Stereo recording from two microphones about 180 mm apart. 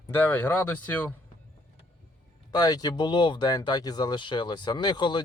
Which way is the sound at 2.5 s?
20° left (ahead or behind).